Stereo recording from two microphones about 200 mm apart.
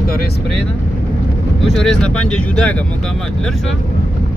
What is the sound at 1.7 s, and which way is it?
Speech, centre (ahead or behind).